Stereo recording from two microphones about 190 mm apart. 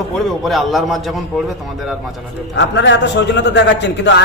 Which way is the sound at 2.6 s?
65° left (ahead or behind).